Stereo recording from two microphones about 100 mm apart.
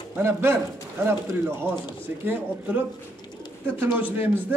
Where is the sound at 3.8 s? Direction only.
15° right (ahead or behind).